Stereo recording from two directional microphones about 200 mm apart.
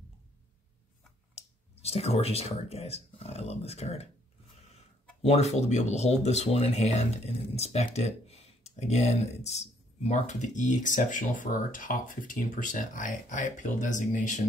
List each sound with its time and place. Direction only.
1.3 s speech: 30° left (ahead or behind)
5.2 s speech: 30° left (ahead or behind)